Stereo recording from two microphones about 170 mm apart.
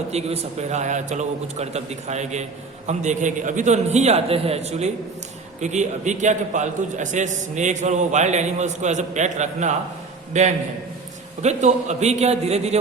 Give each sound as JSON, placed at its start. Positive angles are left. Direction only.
{"t": 0.1, "sound": "a man's voice", "side_deg": -40}